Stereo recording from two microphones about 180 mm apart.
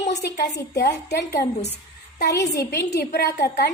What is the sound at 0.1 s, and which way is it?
Speech, 65° left (ahead or behind).